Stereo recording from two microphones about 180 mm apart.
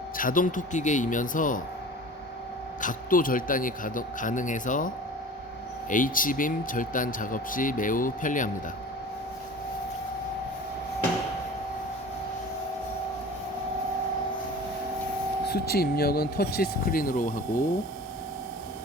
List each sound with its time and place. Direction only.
0.2 s speech: 50° left (ahead or behind)
2.8 s speech: 50° left (ahead or behind)
5.9 s speech: 50° left (ahead or behind)
15.4 s speech: 60° left (ahead or behind)